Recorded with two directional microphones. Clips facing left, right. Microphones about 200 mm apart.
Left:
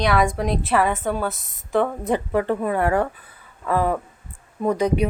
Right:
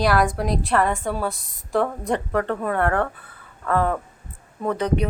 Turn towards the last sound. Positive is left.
turn(degrees=10)  # may be behind; listen again after turning